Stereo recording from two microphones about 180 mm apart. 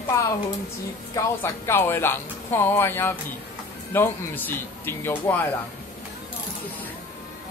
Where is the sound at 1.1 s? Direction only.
10° left (ahead or behind).